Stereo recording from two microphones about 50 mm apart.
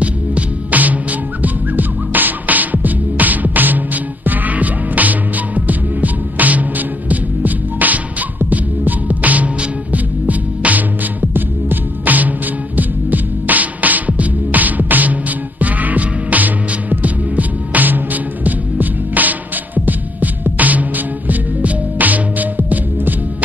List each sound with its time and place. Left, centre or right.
0.0 s music: right
15.6 s hum: right
21.9 s music: right